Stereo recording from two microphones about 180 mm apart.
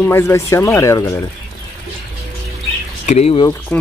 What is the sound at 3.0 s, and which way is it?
Speech, 35° left (ahead or behind).